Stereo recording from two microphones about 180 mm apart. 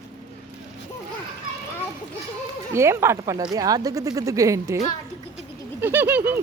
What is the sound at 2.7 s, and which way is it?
Speech, 15° right (ahead or behind).